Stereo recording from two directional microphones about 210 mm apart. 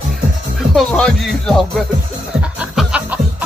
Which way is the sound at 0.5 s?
Centre (ahead or behind).